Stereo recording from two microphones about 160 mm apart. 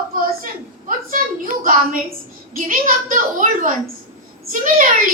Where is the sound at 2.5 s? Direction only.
60° right (ahead or behind).